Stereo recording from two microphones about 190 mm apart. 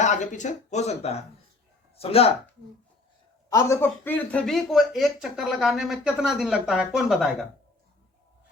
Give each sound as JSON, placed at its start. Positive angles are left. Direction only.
{"t": 0.0, "sound": "speech", "side_deg": 40}
{"t": 3.5, "sound": "a man's voice", "side_deg": 15}